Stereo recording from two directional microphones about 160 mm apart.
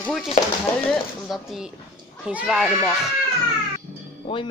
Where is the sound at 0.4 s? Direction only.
50° left (ahead or behind).